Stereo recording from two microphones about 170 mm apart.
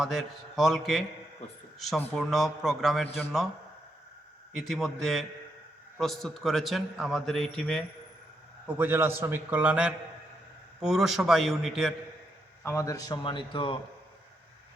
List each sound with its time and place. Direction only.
0.0 s a man's voice: centre (ahead or behind)
4.5 s a man's voice: centre (ahead or behind)
8.6 s a man's voice: 10° right (ahead or behind)
12.6 s a man's voice: 20° left (ahead or behind)